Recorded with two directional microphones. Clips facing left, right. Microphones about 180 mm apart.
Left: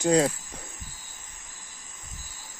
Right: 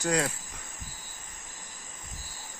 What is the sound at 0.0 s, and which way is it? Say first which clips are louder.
Speech: left 7 dB; 30° left (ahead or behind).